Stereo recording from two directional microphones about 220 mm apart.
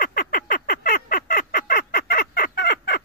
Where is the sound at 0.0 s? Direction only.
40° left (ahead or behind).